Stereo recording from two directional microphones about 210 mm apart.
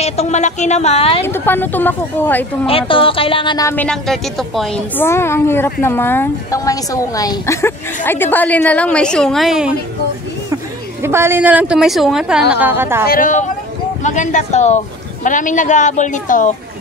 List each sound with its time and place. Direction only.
0.0 s a woman's voice: 30° left (ahead or behind)
1.2 s speech: 10° left (ahead or behind)
2.6 s speech: 25° left (ahead or behind); by 13.0 s 10° right (ahead or behind)
13.1 s a woman's voice: 40° left (ahead or behind)